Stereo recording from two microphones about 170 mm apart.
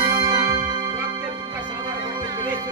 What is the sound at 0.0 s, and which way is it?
Music, 25° right (ahead or behind).